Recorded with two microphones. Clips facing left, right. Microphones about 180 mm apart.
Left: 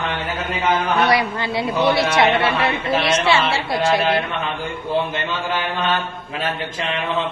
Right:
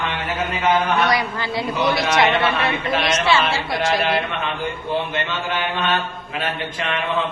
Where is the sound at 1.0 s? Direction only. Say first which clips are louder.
Left 2 dB; 30° left (ahead or behind).